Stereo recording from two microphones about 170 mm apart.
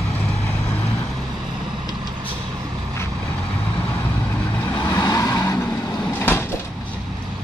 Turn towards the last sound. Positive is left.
turn(degrees=15)  # may be behind; listen again after turning